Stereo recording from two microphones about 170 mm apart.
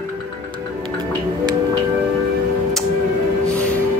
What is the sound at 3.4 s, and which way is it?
Music, 5° left (ahead or behind).